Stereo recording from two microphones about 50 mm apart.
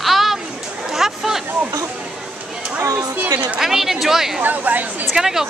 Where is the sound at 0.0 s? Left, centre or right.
Centre.